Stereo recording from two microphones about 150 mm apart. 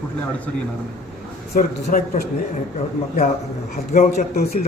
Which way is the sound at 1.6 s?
65° left (ahead or behind).